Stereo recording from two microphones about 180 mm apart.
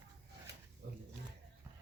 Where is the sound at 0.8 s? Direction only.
60° right (ahead or behind).